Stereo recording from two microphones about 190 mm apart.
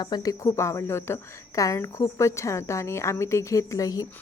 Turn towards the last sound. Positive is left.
turn(degrees=20)  # may be behind; listen again after turning